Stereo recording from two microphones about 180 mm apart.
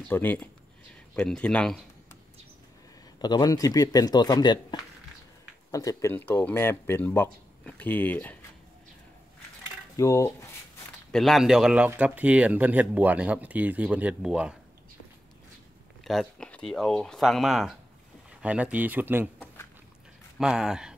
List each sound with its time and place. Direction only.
0.1 s speech: 10° left (ahead or behind)
3.2 s speech: 20° left (ahead or behind)
9.9 s speech: 15° left (ahead or behind)
11.1 s speech: centre (ahead or behind)
16.0 s speech: centre (ahead or behind)